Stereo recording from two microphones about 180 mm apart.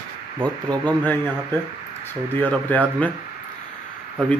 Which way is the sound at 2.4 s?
10° left (ahead or behind).